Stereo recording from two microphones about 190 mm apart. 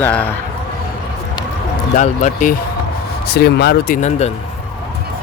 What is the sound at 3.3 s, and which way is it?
Speech, 55° left (ahead or behind).